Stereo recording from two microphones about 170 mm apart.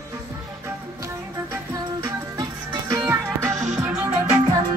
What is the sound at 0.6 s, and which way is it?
Music, 15° right (ahead or behind).